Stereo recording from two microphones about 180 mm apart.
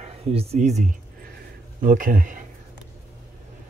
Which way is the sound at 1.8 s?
50° right (ahead or behind).